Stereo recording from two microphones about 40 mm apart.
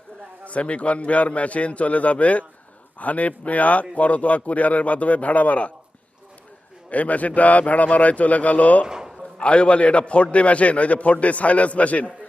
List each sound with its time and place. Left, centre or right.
0.4 s speech: left
6.9 s speech: left
8.9 s a sound: centre
9.4 s a man's voice: left